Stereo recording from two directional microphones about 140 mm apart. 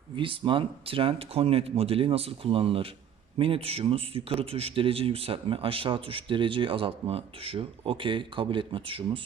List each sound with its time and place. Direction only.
0.2 s a man's voice: 40° right (ahead or behind)